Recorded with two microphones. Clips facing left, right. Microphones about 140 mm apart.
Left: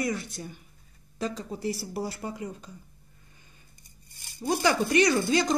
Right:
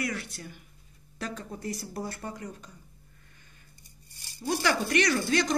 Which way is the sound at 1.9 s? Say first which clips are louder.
Left 3 dB; 10° left (ahead or behind).